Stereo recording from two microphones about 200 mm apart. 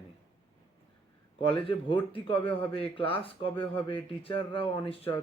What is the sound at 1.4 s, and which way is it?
A man's voice, 25° left (ahead or behind).